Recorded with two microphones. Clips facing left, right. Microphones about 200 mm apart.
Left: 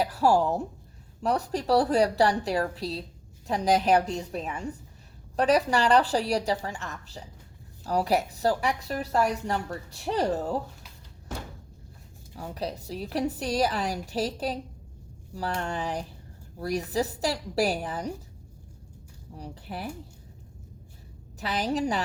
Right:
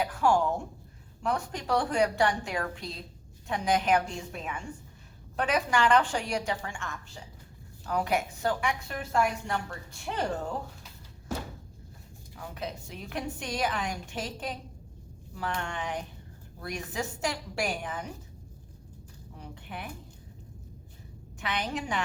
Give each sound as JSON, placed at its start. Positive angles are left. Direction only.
{"t": 0.0, "sound": "a woman's voice", "side_deg": 35}
{"t": 12.4, "sound": "a woman's voice", "side_deg": 35}
{"t": 19.4, "sound": "a woman's voice", "side_deg": 35}
{"t": 21.3, "sound": "a woman's voice", "side_deg": 35}